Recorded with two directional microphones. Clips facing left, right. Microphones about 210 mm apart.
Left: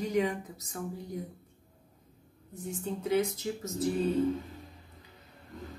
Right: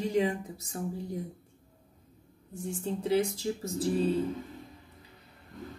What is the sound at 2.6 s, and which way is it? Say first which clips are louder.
Speech: right 2 dB; 30° right (ahead or behind).